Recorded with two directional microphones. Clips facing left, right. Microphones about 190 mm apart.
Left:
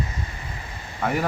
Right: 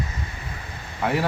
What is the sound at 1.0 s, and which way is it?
Speech, centre (ahead or behind).